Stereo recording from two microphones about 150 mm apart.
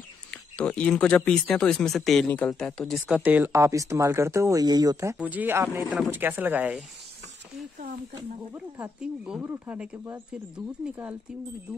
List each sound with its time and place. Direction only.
0.3 s speech: 5° left (ahead or behind)
3.3 s speech: 10° right (ahead or behind)
5.1 s speech: 10° right (ahead or behind)
8.5 s speech: 10° right (ahead or behind)